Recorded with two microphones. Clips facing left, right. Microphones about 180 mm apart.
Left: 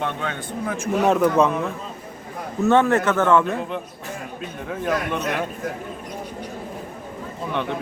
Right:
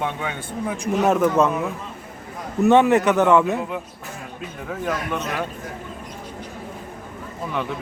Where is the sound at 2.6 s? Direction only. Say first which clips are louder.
Right 2 dB; 15° right (ahead or behind).